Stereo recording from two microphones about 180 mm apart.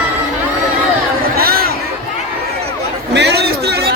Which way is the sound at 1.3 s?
55° right (ahead or behind).